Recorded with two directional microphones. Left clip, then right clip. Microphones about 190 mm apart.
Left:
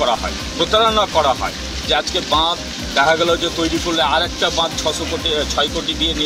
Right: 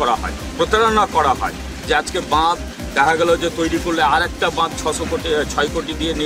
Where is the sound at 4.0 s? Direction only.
15° right (ahead or behind).